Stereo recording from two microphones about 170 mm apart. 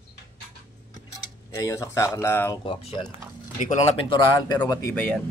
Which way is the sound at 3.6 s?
40° left (ahead or behind).